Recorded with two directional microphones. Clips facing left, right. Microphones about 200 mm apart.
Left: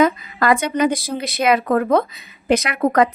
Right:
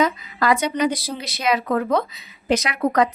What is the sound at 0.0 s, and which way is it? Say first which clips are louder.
A woman's voice: left 4 dB; 55° left (ahead or behind).